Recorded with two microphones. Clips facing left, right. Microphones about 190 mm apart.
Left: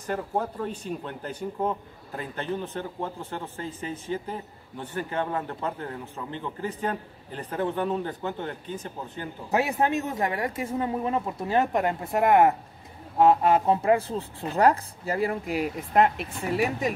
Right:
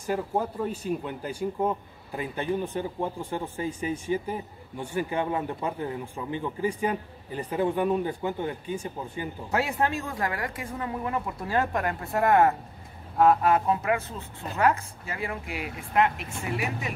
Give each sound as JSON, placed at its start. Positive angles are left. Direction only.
{"t": 0.0, "sound": "speech", "side_deg": -5}
{"t": 9.5, "sound": "speech", "side_deg": 20}